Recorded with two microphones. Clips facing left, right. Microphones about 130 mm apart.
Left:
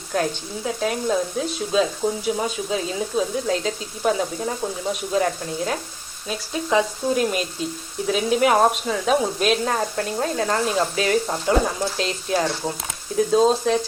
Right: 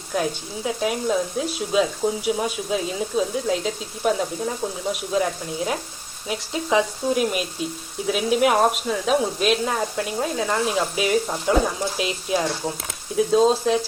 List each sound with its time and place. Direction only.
0.1 s speech: 5° right (ahead or behind)
6.2 s speech: 15° right (ahead or behind)
7.1 s speech: 5° right (ahead or behind)